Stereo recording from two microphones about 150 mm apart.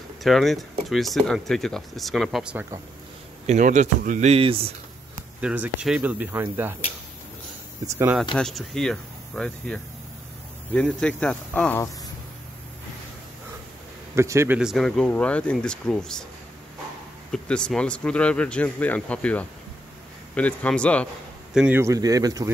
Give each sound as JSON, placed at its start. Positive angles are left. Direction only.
{"t": 0.2, "sound": "speech", "side_deg": 0}
{"t": 3.4, "sound": "speech", "side_deg": -55}
{"t": 4.3, "sound": "speech", "side_deg": -40}
{"t": 5.4, "sound": "speech", "side_deg": -10}
{"t": 7.8, "sound": "speech", "side_deg": -20}
{"t": 8.4, "sound": "speech", "side_deg": 5}
{"t": 14.1, "sound": "speech", "side_deg": -20}
{"t": 14.6, "sound": "speech", "side_deg": 0}
{"t": 17.3, "sound": "speech", "side_deg": 5}
{"t": 21.5, "sound": "speech", "side_deg": -10}
{"t": 21.8, "sound": "speech", "side_deg": -25}